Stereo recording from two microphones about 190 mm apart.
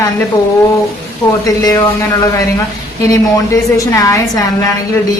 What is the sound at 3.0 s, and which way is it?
A woman's voice, 15° left (ahead or behind).